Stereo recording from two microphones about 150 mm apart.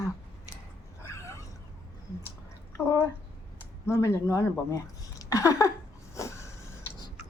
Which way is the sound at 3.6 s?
20° left (ahead or behind).